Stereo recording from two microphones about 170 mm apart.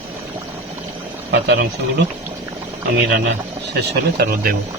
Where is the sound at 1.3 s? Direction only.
85° right.